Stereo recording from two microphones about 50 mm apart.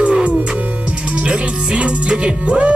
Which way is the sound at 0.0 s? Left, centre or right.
Right.